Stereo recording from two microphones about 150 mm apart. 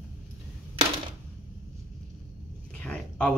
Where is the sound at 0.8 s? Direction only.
45° right (ahead or behind).